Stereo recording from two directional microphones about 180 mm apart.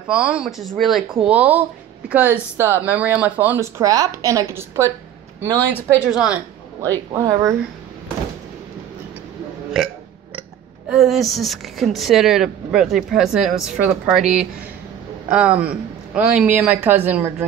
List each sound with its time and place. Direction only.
0.1 s speech: 5° right (ahead or behind)
7.1 s speech: 20° right (ahead or behind)
10.9 s speech: centre (ahead or behind)